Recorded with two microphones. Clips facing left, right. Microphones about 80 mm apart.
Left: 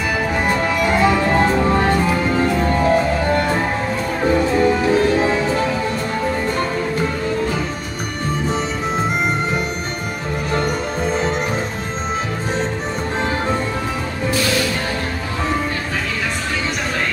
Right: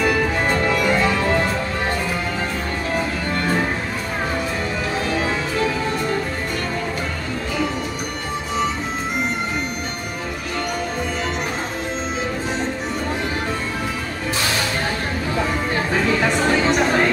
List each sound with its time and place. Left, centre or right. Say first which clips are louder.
0.5 s music: left 2 dB; centre
1.0 s music: left 3 dB; left